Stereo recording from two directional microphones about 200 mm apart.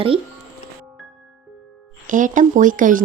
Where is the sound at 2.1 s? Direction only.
40° right (ahead or behind).